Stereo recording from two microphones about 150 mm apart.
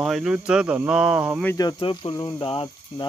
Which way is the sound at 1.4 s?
20° left (ahead or behind).